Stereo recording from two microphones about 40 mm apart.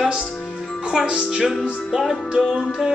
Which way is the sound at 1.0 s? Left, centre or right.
Right.